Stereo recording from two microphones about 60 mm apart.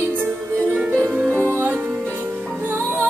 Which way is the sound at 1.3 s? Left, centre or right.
Right.